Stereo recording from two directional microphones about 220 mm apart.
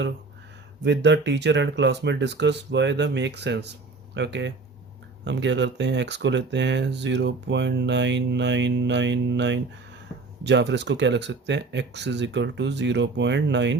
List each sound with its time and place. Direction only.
0.9 s speech: 55° right (ahead or behind)